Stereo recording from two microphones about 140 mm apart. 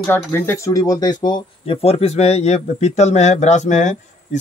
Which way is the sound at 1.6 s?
45° left (ahead or behind).